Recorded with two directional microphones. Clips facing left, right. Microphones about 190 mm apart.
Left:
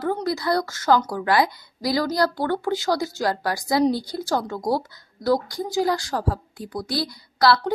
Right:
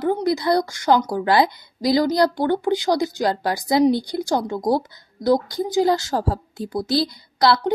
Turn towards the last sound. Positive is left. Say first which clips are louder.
# right 1 dB
turn(degrees=-20)  # may be behind; listen again after turning